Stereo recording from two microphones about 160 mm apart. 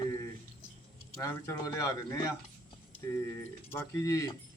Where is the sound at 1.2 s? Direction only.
20° left (ahead or behind).